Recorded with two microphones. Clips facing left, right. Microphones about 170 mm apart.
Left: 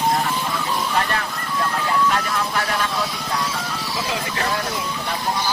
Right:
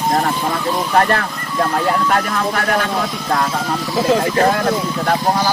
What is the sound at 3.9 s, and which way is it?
Speech, 50° right (ahead or behind).